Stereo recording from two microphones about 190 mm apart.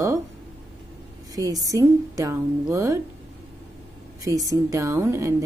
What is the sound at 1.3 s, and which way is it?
Speech, 20° right (ahead or behind).